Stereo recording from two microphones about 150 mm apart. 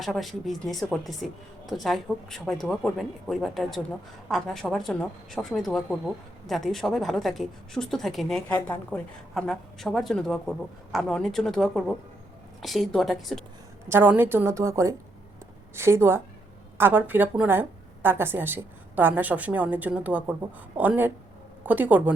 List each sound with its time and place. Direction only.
0.0 s speech: centre (ahead or behind)
13.8 s a woman's voice: 15° right (ahead or behind)